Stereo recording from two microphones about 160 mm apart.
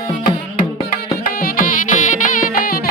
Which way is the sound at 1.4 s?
60° left (ahead or behind).